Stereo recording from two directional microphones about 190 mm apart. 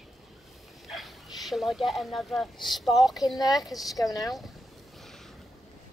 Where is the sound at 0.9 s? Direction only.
Centre (ahead or behind).